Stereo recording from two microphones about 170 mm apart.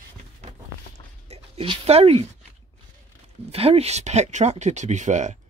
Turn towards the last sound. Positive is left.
turn(degrees=-45)  # may be behind; listen again after turning